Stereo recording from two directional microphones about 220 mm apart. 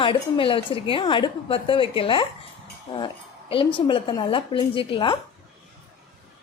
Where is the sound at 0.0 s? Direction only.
25° left (ahead or behind).